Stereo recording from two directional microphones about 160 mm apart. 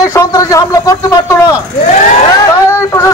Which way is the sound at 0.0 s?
20° left (ahead or behind).